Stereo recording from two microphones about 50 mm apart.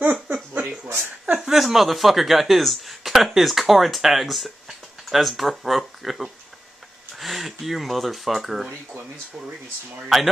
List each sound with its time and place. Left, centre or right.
0.0 s a sound: right
1.4 s speech: centre
10.0 s speech: centre